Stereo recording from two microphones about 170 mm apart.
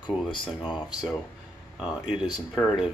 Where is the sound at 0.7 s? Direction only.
25° left (ahead or behind).